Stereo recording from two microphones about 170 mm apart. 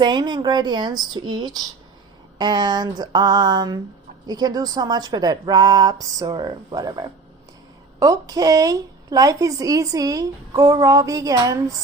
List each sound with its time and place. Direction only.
0.0 s a woman's voice: 25° right (ahead or behind)